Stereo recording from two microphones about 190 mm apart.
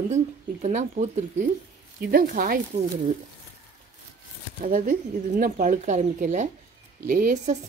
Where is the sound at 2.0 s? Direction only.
55° right (ahead or behind).